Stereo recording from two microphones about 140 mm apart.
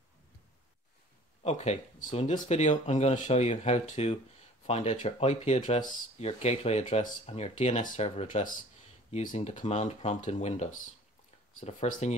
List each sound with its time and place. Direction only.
1.4 s speech: 50° left (ahead or behind)
6.1 s speech: 50° left (ahead or behind)